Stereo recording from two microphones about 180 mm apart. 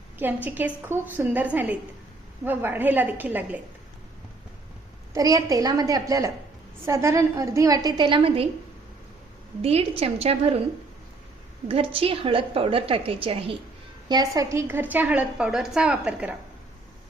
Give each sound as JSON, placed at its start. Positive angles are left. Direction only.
{"t": 0.4, "sound": "a woman's voice", "side_deg": -10}
{"t": 5.1, "sound": "a woman's voice", "side_deg": -20}
{"t": 9.6, "sound": "a woman's voice", "side_deg": -35}
{"t": 11.7, "sound": "a woman's voice", "side_deg": -30}
{"t": 14.1, "sound": "a woman's voice", "side_deg": -20}